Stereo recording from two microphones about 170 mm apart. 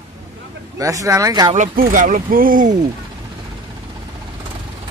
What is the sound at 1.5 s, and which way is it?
Speech, 50° right (ahead or behind).